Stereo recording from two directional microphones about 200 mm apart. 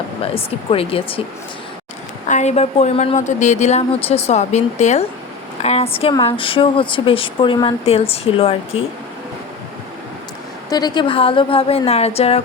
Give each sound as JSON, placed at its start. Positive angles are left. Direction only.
{"t": 0.2, "sound": "speech", "side_deg": 30}
{"t": 2.2, "sound": "a woman's voice", "side_deg": 35}
{"t": 10.7, "sound": "speech", "side_deg": 20}